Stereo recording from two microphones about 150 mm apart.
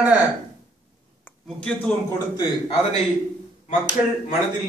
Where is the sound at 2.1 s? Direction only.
25° left (ahead or behind).